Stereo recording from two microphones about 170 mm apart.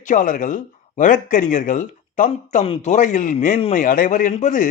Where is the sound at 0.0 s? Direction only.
50° left (ahead or behind).